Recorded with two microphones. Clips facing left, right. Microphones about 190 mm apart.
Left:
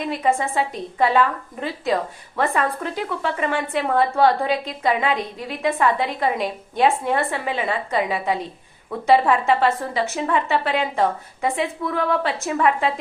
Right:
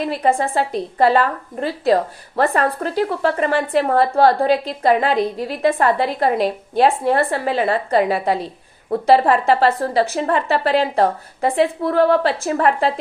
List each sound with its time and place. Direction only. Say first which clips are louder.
0.3 s speech: right 3 dB; 35° right (ahead or behind)